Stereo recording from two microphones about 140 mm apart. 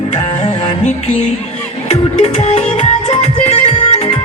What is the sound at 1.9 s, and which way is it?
Music, 50° left (ahead or behind).